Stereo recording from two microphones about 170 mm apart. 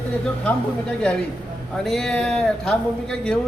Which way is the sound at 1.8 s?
Centre (ahead or behind).